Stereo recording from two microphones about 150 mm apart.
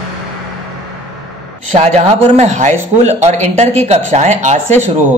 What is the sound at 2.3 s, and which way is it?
Speech, 50° right (ahead or behind).